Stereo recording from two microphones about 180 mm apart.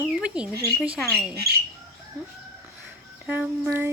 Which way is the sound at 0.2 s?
5° right (ahead or behind).